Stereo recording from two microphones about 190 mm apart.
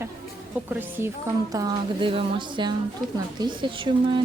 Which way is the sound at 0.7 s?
10° right (ahead or behind).